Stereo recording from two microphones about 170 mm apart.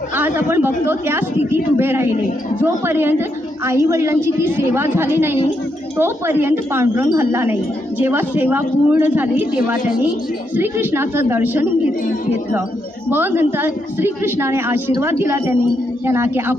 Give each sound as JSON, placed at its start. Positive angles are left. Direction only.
{"t": 0.1, "sound": "a woman's voice", "side_deg": -10}
{"t": 13.1, "sound": "a woman's voice", "side_deg": -10}